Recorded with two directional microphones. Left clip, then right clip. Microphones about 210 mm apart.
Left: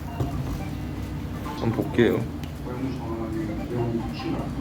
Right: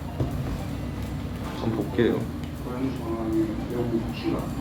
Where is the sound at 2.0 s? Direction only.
30° left (ahead or behind).